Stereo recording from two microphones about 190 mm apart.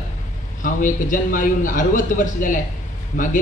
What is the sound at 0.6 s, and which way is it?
Speech, 45° left (ahead or behind).